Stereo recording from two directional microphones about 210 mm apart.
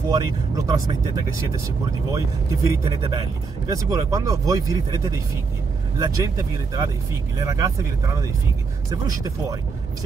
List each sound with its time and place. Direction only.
0.1 s speech: 15° right (ahead or behind)
2.1 s speech: 15° right (ahead or behind)